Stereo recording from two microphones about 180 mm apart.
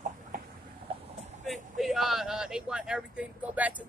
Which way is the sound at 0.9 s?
30° right (ahead or behind).